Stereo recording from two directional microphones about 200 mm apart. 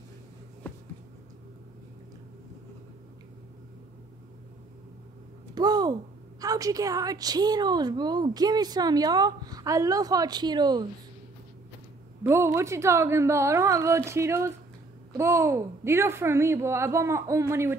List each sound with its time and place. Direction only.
5.5 s a sound: 20° right (ahead or behind)
6.4 s a woman's voice: 15° right (ahead or behind)
12.2 s a woman's voice: 10° right (ahead or behind)